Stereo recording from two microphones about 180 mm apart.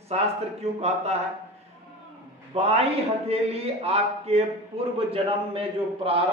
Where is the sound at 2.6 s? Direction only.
35° right (ahead or behind).